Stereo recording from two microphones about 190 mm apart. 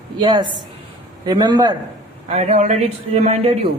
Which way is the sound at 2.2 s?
35° right (ahead or behind).